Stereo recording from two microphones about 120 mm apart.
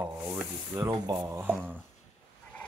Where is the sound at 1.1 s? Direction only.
25° right (ahead or behind).